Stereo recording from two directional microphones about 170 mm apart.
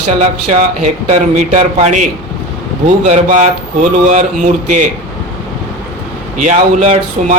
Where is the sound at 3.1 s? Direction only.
45° right (ahead or behind).